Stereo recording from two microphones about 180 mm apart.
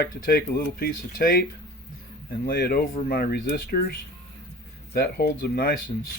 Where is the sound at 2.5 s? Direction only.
55° left (ahead or behind).